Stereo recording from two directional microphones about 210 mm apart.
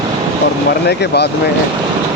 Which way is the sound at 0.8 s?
50° left (ahead or behind).